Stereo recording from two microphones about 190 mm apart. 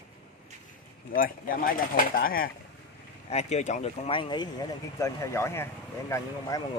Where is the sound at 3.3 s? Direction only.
35° left (ahead or behind).